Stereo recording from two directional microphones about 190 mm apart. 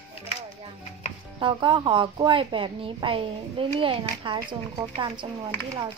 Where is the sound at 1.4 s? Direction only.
25° right (ahead or behind).